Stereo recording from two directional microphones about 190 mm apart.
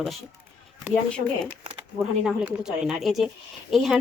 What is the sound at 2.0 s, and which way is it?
Speech, 5° right (ahead or behind).